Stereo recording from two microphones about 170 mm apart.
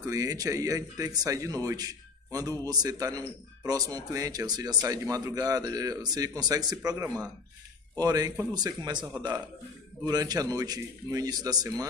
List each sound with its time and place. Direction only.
0.0 s speech: 20° right (ahead or behind)